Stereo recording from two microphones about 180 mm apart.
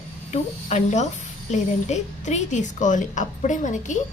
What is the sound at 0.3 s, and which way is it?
A woman's voice, 40° left (ahead or behind).